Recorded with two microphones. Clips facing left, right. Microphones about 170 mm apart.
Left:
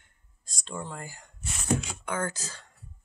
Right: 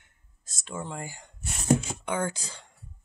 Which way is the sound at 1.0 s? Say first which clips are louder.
Right 3 dB; 20° right (ahead or behind).